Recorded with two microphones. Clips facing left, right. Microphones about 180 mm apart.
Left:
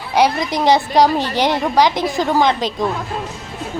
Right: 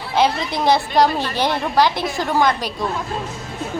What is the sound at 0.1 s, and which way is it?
A woman's voice, 15° left (ahead or behind).